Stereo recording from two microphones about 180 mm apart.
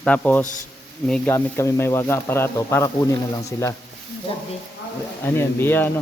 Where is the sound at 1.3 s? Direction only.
15° left (ahead or behind).